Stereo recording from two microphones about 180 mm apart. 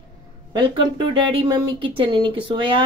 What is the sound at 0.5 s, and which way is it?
Speech, 25° right (ahead or behind).